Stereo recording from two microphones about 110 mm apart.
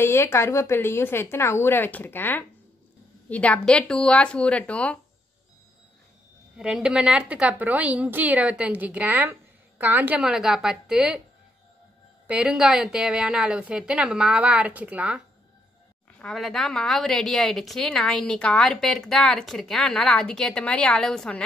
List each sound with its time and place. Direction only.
0.0 s a woman's voice: 20° left (ahead or behind)
6.6 s a woman's voice: 10° right (ahead or behind)
12.3 s a woman's voice: 10° right (ahead or behind)
16.2 s a woman's voice: 5° left (ahead or behind)